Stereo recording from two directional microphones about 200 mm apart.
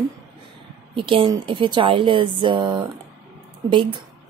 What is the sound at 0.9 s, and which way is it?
A woman's voice, 25° right (ahead or behind).